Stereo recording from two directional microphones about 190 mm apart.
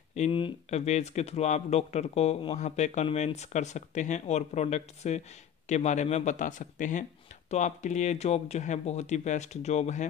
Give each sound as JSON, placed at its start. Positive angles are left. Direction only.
{"t": 0.1, "sound": "speech", "side_deg": 30}